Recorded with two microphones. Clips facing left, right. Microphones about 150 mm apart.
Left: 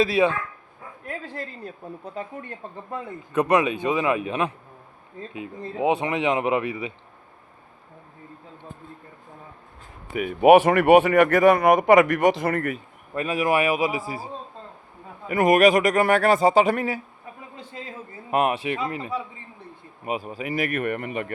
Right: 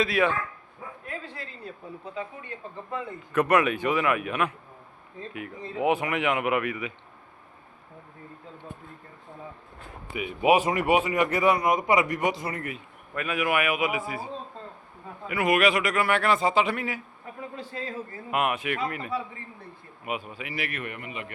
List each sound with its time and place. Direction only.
0.2 s speech: 20° left (ahead or behind)
1.0 s bow-wow: 45° left (ahead or behind)
2.2 s speech: 45° left (ahead or behind)
3.5 s speech: 20° left (ahead or behind)
10.2 s speech: 50° left (ahead or behind)
13.1 s speech: 35° left (ahead or behind)
15.3 s speech: 40° left (ahead or behind)
17.6 s speech: 20° left (ahead or behind)
18.3 s speech: 35° left (ahead or behind)
20.1 s speech: 40° left (ahead or behind)